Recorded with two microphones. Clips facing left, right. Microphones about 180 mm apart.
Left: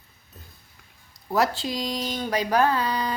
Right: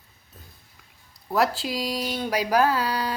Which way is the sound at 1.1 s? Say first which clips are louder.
Even; centre (ahead or behind).